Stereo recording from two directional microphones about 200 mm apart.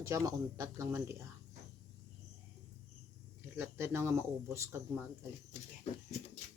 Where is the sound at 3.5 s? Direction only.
10° right (ahead or behind).